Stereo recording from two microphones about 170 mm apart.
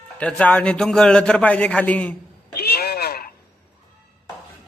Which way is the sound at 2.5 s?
70° left (ahead or behind).